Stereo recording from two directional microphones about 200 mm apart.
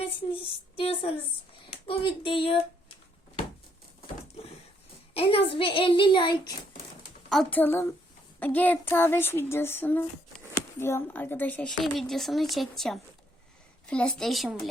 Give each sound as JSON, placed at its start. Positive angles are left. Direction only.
{"t": 0.8, "sound": "a child's voice", "side_deg": 30}
{"t": 5.1, "sound": "a child's voice", "side_deg": 30}
{"t": 7.3, "sound": "a woman's voice", "side_deg": 5}